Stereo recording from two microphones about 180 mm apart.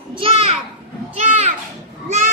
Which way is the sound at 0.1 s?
30° right (ahead or behind).